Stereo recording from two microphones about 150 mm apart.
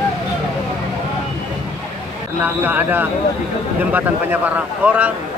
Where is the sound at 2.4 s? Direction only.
10° right (ahead or behind).